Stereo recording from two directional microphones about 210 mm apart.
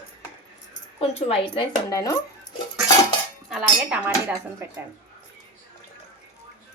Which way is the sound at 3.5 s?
5° right (ahead or behind).